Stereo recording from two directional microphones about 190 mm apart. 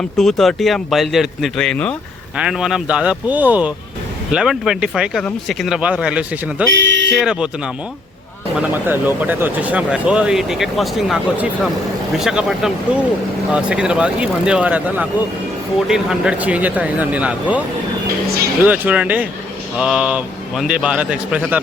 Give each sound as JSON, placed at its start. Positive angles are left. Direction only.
{"t": 0.2, "sound": "speech", "side_deg": 0}
{"t": 6.7, "sound": "speech", "side_deg": -80}
{"t": 7.1, "sound": "speech", "side_deg": -5}
{"t": 18.6, "sound": "speech", "side_deg": -10}